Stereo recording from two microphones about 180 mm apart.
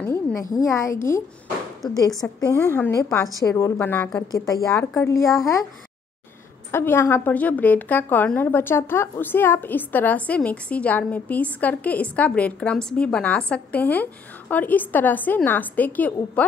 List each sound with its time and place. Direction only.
0.0 s a sound: 15° left (ahead or behind)
0.7 s a woman's voice: 15° left (ahead or behind)
6.7 s a woman's voice: 15° left (ahead or behind)